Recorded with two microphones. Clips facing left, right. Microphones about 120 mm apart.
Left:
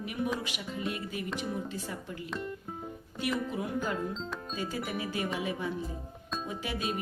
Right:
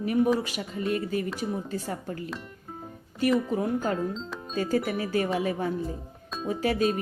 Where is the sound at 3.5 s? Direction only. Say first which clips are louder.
Right 6 dB; 40° right (ahead or behind).